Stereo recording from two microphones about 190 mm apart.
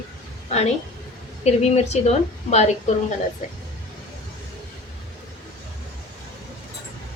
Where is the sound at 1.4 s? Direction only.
35° left (ahead or behind).